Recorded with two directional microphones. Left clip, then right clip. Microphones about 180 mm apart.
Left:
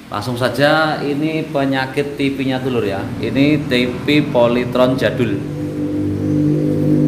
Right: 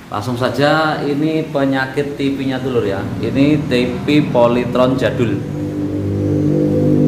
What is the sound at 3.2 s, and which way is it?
A man's voice, 10° left (ahead or behind).